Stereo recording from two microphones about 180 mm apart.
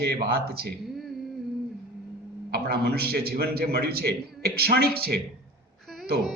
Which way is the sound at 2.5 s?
60° right (ahead or behind).